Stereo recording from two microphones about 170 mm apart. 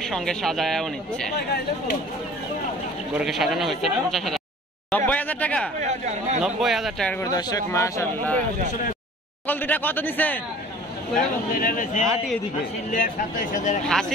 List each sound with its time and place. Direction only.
0.1 s speech: 5° left (ahead or behind)
3.1 s speech: 5° right (ahead or behind)
5.8 s speech: 45° right (ahead or behind)
6.4 s speech: centre (ahead or behind)
7.2 s speech: 20° left (ahead or behind)
9.5 s speech: 10° left (ahead or behind)
11.1 s speech: 55° left (ahead or behind)
13.8 s speech: 5° left (ahead or behind)